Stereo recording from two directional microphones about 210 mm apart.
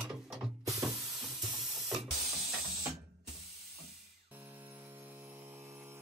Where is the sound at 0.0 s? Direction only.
5° right (ahead or behind).